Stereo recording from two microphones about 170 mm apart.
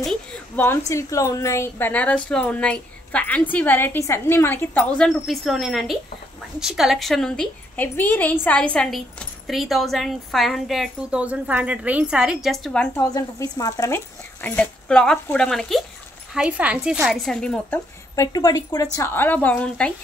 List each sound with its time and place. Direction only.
0.0 s a woman's voice: 5° left (ahead or behind)
12.9 s a woman's voice: 20° left (ahead or behind); by 15.8 s 5° left (ahead or behind)
16.3 s a woman's voice: 5° right (ahead or behind)
18.1 s a woman's voice: 20° left (ahead or behind)